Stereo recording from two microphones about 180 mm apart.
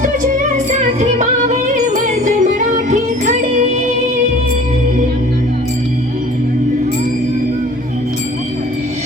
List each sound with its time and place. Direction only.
0.0 s music: 45° right (ahead or behind)